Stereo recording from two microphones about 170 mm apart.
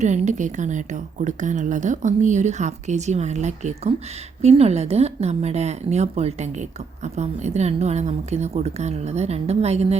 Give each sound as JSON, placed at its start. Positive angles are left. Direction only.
{"t": 0.0, "sound": "a woman's voice", "side_deg": -45}